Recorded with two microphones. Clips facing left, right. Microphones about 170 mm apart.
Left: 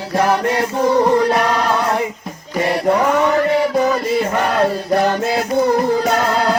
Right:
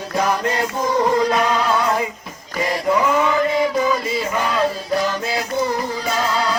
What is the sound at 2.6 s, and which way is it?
Chant, 60° left (ahead or behind).